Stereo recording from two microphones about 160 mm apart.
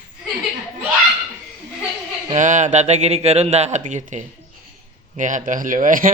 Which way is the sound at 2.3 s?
50° right (ahead or behind).